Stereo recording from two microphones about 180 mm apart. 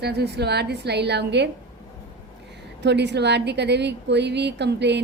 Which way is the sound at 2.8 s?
70° right (ahead or behind).